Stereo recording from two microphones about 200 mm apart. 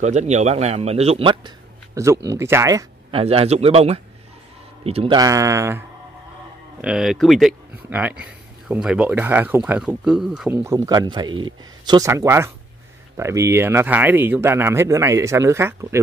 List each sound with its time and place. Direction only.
0.0 s speech: 35° right (ahead or behind)
2.2 s speech: 15° right (ahead or behind)
3.2 s speech: 30° right (ahead or behind); by 5.9 s 15° right (ahead or behind)
6.8 s speech: 5° right (ahead or behind)